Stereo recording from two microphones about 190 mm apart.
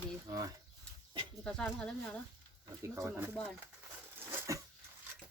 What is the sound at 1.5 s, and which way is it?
Speech, 5° left (ahead or behind).